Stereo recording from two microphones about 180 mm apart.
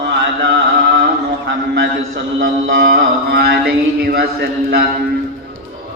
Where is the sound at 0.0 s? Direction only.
80° right.